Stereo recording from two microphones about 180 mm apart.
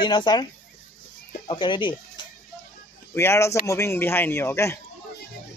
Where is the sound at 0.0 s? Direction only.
25° left (ahead or behind).